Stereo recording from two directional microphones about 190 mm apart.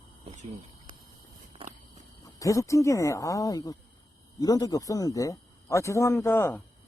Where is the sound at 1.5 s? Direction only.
35° right (ahead or behind).